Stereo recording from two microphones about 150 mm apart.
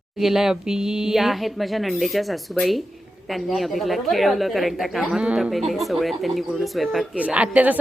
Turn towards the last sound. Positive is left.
turn(degrees=-10)  # may be behind; listen again after turning